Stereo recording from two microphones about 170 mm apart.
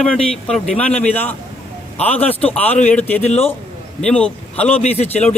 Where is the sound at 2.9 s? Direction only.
10° left (ahead or behind).